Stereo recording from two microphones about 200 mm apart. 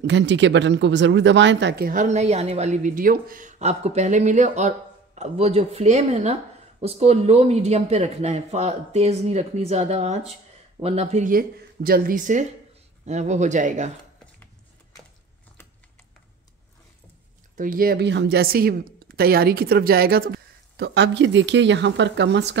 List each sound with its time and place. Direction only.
0.0 s speech: 60° right (ahead or behind)
1.9 s a woman's voice: 35° right (ahead or behind)
17.6 s speech: 45° right (ahead or behind); by 22.6 s 60° right (ahead or behind)